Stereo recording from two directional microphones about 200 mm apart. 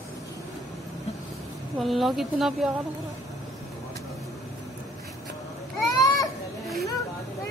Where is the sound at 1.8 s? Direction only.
Centre (ahead or behind).